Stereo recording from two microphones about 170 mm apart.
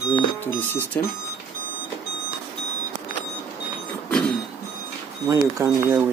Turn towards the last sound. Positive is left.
turn(degrees=-20)  # may be behind; listen again after turning